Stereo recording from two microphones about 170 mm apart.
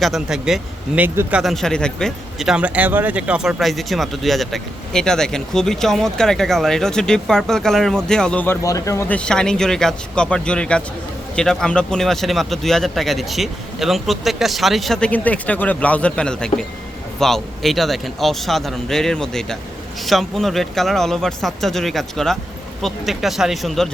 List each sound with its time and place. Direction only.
0.0 s speech: centre (ahead or behind)
1.4 s speech: centre (ahead or behind)
8.6 s speech: 20° left (ahead or behind); by 23.9 s centre (ahead or behind)